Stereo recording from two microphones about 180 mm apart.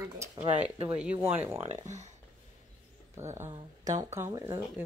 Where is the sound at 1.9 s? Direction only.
40° right (ahead or behind).